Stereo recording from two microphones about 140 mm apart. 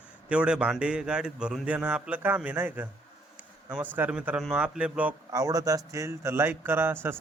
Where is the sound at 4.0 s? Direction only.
10° right (ahead or behind).